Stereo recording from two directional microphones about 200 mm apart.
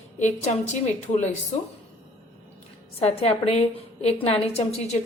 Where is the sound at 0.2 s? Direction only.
35° left (ahead or behind).